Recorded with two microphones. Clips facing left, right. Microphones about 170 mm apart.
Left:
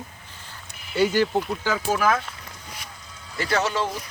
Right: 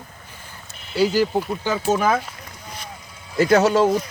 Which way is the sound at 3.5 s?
40° right (ahead or behind).